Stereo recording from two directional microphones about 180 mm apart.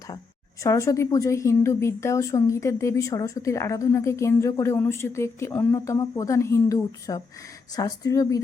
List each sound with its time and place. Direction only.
0.6 s a woman's voice: 15° left (ahead or behind)